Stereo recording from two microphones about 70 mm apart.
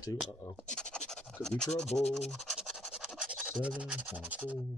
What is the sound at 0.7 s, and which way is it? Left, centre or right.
Speech, centre.